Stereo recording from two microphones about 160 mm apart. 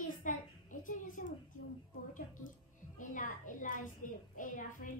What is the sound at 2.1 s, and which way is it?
Music, 55° left (ahead or behind).